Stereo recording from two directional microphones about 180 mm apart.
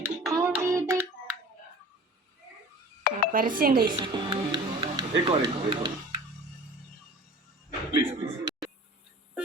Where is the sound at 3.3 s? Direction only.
50° right (ahead or behind).